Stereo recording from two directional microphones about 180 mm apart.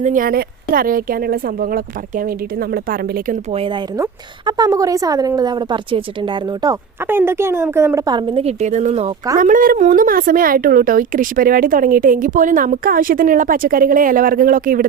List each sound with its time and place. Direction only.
0.0 s a woman's voice: 50° right (ahead or behind)
3.5 s speech: 30° right (ahead or behind)
3.9 s speech: 20° right (ahead or behind)
7.1 s speech: 10° right (ahead or behind); by 9.1 s 35° right (ahead or behind)
9.4 s a woman's voice: 50° right (ahead or behind)